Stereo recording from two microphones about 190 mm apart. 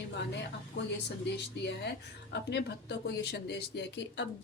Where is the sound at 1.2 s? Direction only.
65° left (ahead or behind).